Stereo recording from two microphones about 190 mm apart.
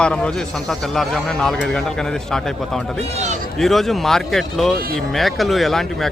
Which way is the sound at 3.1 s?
35° right (ahead or behind).